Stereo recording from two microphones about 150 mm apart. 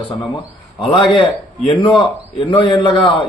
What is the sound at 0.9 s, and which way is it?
Speech, 35° left (ahead or behind).